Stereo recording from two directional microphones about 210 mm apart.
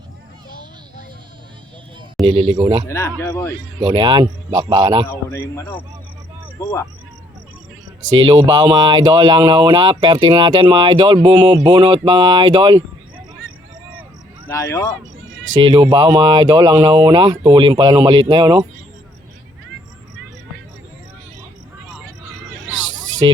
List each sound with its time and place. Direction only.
2.5 s speech: 25° right (ahead or behind)
2.9 s speech: 15° left (ahead or behind)
3.8 s speech: 25° right (ahead or behind)
5.3 s speech: 15° left (ahead or behind)
8.4 s speech: 20° right (ahead or behind)
14.4 s speech: 15° left (ahead or behind)
15.6 s speech: 25° right (ahead or behind)
22.6 s a sound: 65° right (ahead or behind)